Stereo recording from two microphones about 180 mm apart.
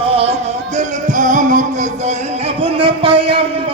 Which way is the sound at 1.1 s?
45° right (ahead or behind).